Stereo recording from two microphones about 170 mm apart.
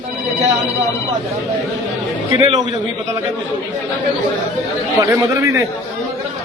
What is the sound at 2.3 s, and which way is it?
Speech, 30° right (ahead or behind).